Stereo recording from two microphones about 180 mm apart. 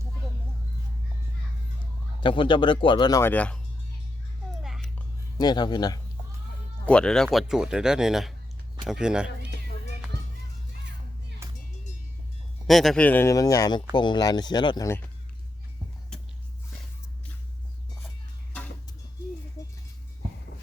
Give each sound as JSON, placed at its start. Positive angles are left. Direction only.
{"t": 2.2, "sound": "speech", "side_deg": 30}
{"t": 4.6, "sound": "a sound", "side_deg": 0}
{"t": 5.4, "sound": "speech", "side_deg": 25}
{"t": 6.8, "sound": "speech", "side_deg": 5}
{"t": 12.6, "sound": "speech", "side_deg": 0}